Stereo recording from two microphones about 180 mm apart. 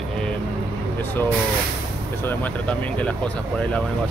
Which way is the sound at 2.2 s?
10° left (ahead or behind).